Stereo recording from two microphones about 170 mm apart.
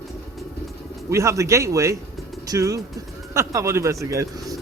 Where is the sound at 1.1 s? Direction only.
15° right (ahead or behind).